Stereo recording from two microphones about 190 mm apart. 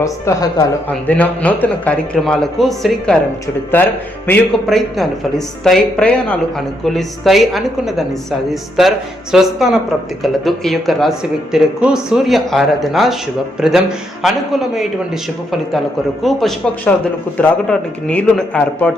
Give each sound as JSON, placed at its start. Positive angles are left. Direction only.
{"t": 0.0, "sound": "a woman's voice", "side_deg": 15}
{"t": 0.9, "sound": "a man's voice", "side_deg": 10}
{"t": 9.3, "sound": "speech", "side_deg": 0}
{"t": 16.2, "sound": "a man's voice", "side_deg": 0}